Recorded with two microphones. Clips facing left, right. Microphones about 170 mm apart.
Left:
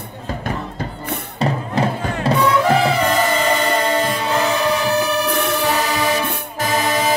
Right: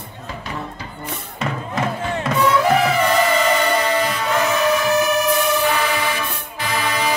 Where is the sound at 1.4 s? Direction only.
35° left (ahead or behind).